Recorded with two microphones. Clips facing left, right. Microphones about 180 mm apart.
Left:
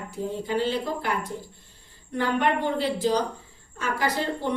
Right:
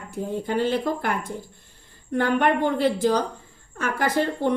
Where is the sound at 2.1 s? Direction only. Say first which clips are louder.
Right 3 dB; 50° right (ahead or behind).